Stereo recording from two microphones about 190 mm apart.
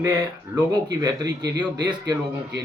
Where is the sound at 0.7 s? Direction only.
20° right (ahead or behind).